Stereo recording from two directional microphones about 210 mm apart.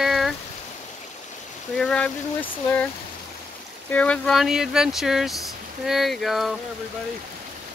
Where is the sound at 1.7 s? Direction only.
5° left (ahead or behind).